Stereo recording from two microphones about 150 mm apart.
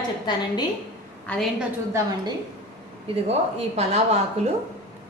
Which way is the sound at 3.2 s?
45° right (ahead or behind).